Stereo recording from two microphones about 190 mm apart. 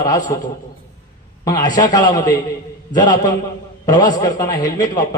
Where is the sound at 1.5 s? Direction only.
20° left (ahead or behind).